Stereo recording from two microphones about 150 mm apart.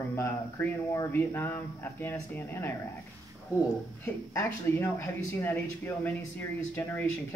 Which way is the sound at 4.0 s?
20° left (ahead or behind).